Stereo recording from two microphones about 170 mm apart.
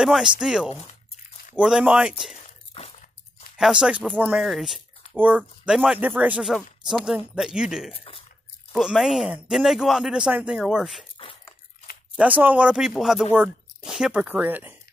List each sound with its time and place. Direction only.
0.0 s speech: 5° right (ahead or behind)
2.7 s a sound: 35° left (ahead or behind)
3.5 s speech: 5° right (ahead or behind)
12.2 s speech: 10° right (ahead or behind)